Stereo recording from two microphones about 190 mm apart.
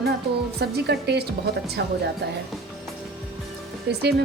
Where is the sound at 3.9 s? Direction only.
60° right (ahead or behind).